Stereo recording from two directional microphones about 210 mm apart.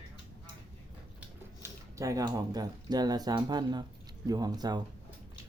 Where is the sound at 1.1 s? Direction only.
15° right (ahead or behind).